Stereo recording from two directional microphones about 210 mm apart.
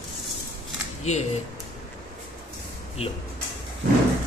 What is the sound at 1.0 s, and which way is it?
Speech, 30° left (ahead or behind).